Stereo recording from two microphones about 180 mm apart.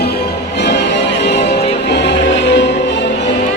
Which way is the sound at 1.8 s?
75° left (ahead or behind).